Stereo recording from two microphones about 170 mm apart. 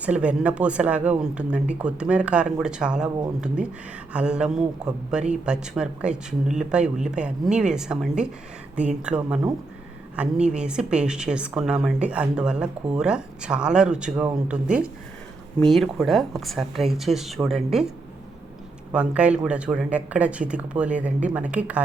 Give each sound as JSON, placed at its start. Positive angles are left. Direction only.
{"t": 0.0, "sound": "a woman's voice", "side_deg": -5}
{"t": 18.9, "sound": "speech", "side_deg": -5}